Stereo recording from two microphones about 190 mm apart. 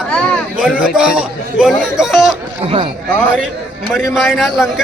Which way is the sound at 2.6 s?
30° right (ahead or behind).